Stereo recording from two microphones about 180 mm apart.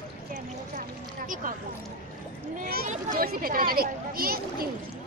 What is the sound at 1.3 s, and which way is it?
Speech, 45° right (ahead or behind).